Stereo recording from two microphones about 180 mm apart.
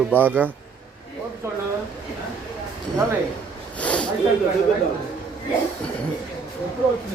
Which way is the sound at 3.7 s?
5° left (ahead or behind).